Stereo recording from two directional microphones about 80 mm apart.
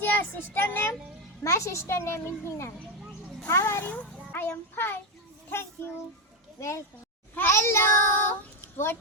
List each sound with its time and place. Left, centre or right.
0.0 s child singing: left
1.5 s a child's voice: left
5.5 s child singing: left
6.6 s a child's voice: left
7.3 s child singing: left
8.7 s speech: left